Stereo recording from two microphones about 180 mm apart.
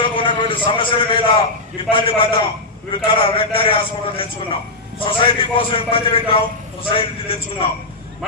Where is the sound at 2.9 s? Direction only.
30° left (ahead or behind).